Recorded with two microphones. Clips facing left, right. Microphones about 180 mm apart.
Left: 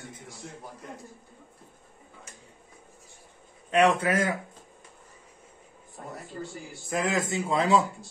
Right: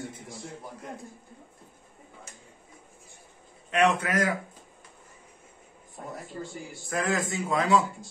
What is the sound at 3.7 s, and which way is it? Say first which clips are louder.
Speech: left 2 dB; 30° left (ahead or behind).